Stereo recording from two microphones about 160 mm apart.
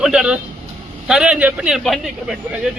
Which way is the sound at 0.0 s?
5° right (ahead or behind).